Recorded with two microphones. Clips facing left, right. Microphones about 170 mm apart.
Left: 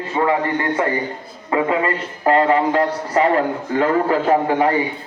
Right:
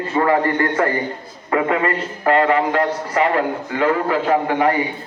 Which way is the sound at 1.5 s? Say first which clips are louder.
Even; 25° left (ahead or behind).